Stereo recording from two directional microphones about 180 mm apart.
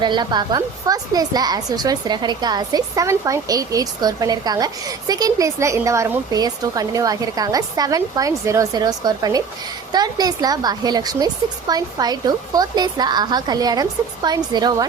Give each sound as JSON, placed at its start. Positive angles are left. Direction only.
{"t": 0.0, "sound": "speech", "side_deg": -25}